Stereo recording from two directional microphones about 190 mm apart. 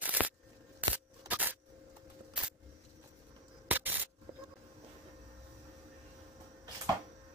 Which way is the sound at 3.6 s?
10° right (ahead or behind).